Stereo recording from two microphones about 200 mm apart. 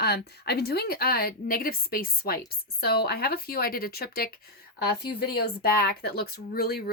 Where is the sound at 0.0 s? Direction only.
55° left (ahead or behind).